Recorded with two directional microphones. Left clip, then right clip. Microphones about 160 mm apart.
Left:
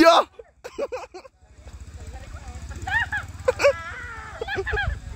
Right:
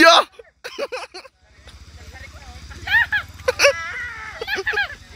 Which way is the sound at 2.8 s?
30° right (ahead or behind).